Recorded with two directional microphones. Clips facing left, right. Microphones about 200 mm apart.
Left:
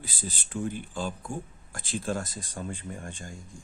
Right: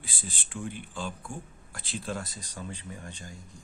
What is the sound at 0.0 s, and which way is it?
Speech, 40° left (ahead or behind).